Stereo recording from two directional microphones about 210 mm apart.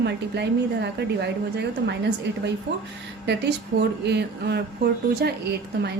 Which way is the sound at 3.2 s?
50° right (ahead or behind).